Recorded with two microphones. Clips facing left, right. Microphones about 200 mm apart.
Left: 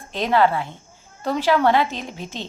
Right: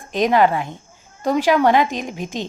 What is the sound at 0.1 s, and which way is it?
A woman's voice, 15° right (ahead or behind).